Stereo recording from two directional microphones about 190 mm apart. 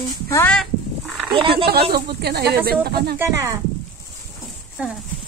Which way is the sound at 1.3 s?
25° right (ahead or behind).